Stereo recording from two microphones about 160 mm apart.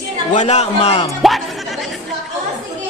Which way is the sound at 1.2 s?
Centre (ahead or behind).